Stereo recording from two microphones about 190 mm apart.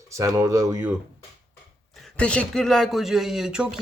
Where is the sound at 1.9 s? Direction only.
5° left (ahead or behind).